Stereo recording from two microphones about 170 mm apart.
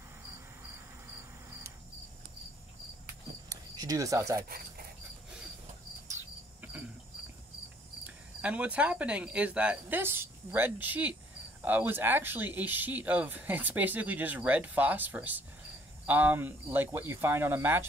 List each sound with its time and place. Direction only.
3.4 s a sound: 20° right (ahead or behind)
4.4 s speech: 60° right (ahead or behind)
6.0 s cricket: 10° right (ahead or behind)
8.4 s speech: 10° right (ahead or behind)